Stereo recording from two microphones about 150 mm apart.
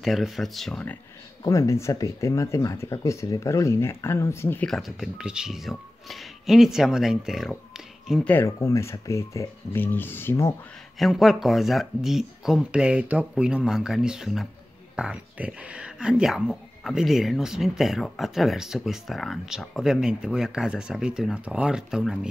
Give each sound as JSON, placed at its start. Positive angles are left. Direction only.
{"t": 0.0, "sound": "speech", "side_deg": 0}
{"t": 1.4, "sound": "speech", "side_deg": 20}
{"t": 4.6, "sound": "speech", "side_deg": 0}
{"t": 8.1, "sound": "speech", "side_deg": 10}
{"t": 11.0, "sound": "speech", "side_deg": 0}